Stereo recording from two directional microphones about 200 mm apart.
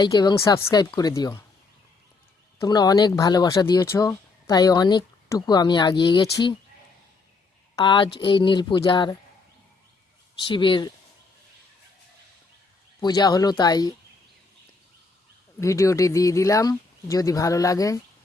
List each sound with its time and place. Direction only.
0.0 s speech: 20° left (ahead or behind)
2.6 s speech: 20° left (ahead or behind)
7.8 s speech: 25° left (ahead or behind)
10.5 s speech: 25° left (ahead or behind)
13.0 s speech: 20° left (ahead or behind)
15.6 s speech: 15° left (ahead or behind)